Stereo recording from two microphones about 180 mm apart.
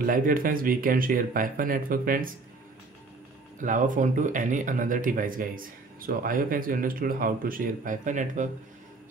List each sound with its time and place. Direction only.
0.0 s speech: 50° right (ahead or behind)
3.6 s speech: 45° right (ahead or behind)